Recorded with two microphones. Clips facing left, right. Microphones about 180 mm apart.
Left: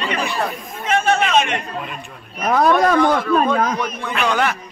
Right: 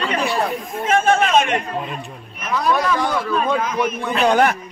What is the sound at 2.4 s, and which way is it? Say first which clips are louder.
Speech: left 5 dB; 50° left (ahead or behind).